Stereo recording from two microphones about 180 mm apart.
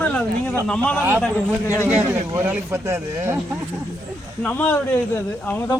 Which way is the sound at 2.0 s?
10° right (ahead or behind).